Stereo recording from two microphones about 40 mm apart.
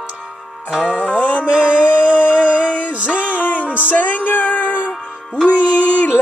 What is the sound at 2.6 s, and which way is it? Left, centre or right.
Music, left.